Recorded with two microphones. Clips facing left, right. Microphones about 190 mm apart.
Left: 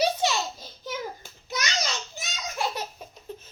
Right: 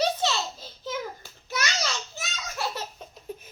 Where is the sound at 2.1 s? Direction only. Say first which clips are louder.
Left 2 dB; 15° left (ahead or behind).